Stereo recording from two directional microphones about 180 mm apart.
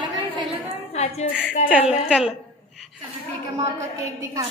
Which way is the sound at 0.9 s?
35° left (ahead or behind).